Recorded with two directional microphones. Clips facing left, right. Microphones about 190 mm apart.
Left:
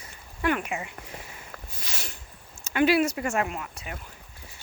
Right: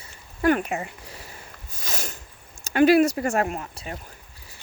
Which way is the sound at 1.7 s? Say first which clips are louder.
Right 8 dB; 45° right (ahead or behind).